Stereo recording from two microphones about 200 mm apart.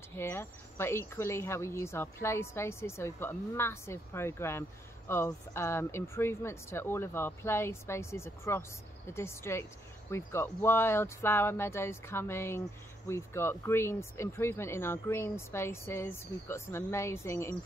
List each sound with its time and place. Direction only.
0.1 s speech: 10° left (ahead or behind)